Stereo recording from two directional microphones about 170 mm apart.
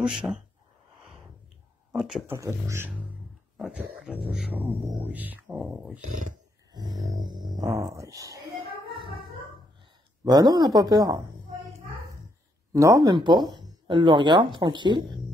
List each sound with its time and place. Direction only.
0.0 s speech: 5° right (ahead or behind)
2.0 s speech: 5° right (ahead or behind)
2.3 s speech: 15° right (ahead or behind)
3.5 s a sound: 5° right (ahead or behind)
4.3 s speech: 5° right (ahead or behind)
6.7 s speech: 25° right (ahead or behind)
8.9 s a sound: 30° right (ahead or behind)
10.2 s speech: 25° right (ahead or behind)
12.7 s speech: 20° right (ahead or behind)